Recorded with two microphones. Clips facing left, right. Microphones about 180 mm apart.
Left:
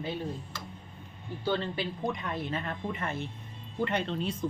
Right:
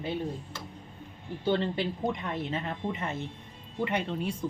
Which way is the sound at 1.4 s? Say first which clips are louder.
Right 3 dB; 25° right (ahead or behind).